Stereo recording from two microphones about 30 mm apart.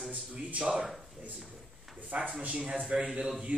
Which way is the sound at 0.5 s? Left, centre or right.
Right.